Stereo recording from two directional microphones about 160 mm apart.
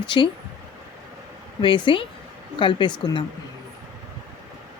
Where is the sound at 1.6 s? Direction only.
30° left (ahead or behind).